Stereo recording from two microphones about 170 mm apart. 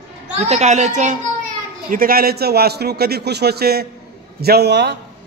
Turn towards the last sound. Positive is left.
turn(degrees=-85)